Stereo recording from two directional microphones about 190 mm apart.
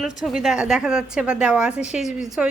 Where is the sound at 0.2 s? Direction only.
Centre (ahead or behind).